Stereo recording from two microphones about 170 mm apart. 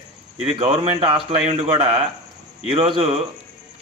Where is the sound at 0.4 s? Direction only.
35° right (ahead or behind).